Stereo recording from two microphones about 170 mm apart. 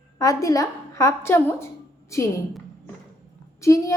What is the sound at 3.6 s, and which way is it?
Speech, 20° left (ahead or behind).